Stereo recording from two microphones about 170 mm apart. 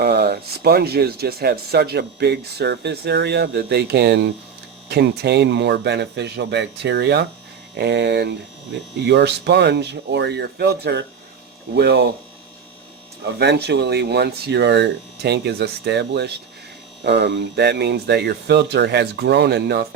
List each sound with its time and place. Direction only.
0.0 s speech: 70° right (ahead or behind)
13.2 s speech: 80° right